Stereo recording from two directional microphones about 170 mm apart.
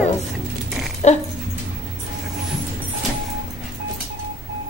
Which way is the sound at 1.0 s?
45° left (ahead or behind).